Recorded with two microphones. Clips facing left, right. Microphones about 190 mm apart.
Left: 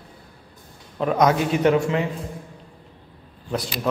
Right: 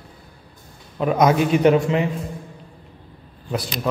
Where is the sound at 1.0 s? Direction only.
10° right (ahead or behind).